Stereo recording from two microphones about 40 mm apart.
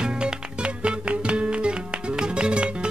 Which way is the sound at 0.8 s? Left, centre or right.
Right.